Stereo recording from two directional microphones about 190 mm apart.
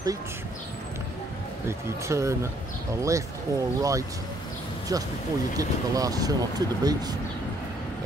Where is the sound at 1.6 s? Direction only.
15° right (ahead or behind).